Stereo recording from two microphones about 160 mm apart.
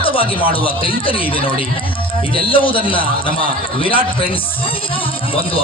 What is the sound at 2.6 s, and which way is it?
Speech, 30° left (ahead or behind).